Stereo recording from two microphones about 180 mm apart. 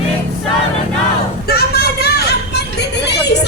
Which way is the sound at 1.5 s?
60° left (ahead or behind).